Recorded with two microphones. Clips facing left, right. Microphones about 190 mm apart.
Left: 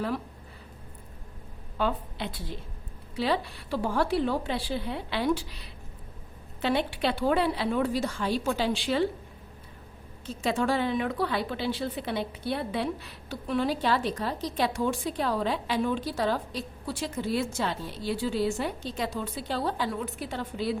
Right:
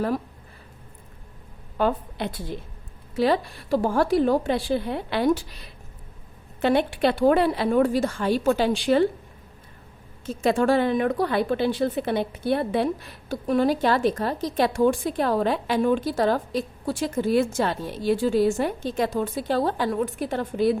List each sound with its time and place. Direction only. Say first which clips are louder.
1.8 s a woman's voice: right 5 dB; 50° right (ahead or behind)
6.6 s a woman's voice: right 6 dB; 50° right (ahead or behind)
10.2 s a woman's voice: right 6 dB; 50° right (ahead or behind)